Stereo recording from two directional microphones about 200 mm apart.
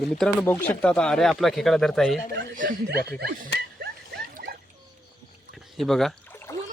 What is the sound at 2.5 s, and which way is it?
Speech, 45° right (ahead or behind).